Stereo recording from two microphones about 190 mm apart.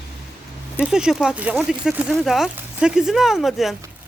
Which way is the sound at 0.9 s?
5° right (ahead or behind).